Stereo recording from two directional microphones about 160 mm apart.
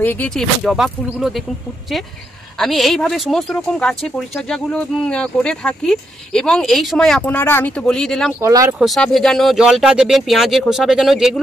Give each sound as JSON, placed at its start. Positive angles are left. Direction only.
{"t": 0.0, "sound": "speech", "side_deg": 10}
{"t": 2.6, "sound": "speech", "side_deg": 0}
{"t": 8.4, "sound": "speech", "side_deg": -20}
{"t": 8.7, "sound": "speech", "side_deg": 0}